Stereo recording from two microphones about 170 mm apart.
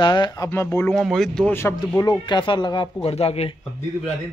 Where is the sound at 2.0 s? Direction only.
25° left (ahead or behind).